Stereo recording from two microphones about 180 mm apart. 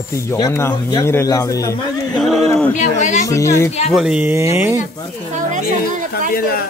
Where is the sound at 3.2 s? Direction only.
15° left (ahead or behind).